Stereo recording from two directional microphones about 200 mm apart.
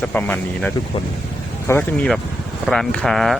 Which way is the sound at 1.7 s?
15° left (ahead or behind).